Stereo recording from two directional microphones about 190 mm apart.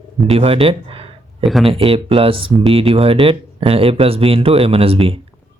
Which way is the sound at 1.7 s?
30° right (ahead or behind).